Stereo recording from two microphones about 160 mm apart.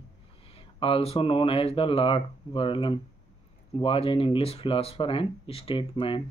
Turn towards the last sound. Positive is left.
turn(degrees=35)  # may be behind; listen again after turning